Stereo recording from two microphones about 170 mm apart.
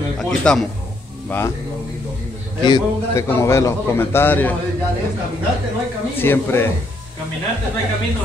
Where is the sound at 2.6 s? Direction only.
25° left (ahead or behind).